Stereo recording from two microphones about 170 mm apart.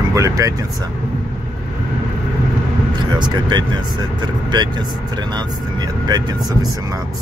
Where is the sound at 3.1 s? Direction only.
25° right (ahead or behind).